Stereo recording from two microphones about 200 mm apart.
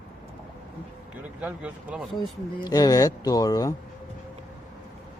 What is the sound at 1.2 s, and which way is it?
Speech, 5° right (ahead or behind).